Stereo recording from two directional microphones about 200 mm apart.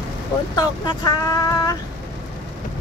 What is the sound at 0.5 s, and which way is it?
Speech, 20° left (ahead or behind).